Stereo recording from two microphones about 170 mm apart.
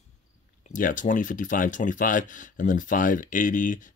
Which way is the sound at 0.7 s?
50° left (ahead or behind).